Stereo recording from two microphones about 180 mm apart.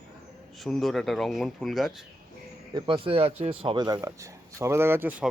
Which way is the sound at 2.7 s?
25° right (ahead or behind).